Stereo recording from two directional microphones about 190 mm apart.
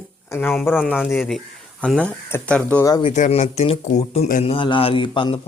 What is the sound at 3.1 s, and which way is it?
Speech, 35° left (ahead or behind).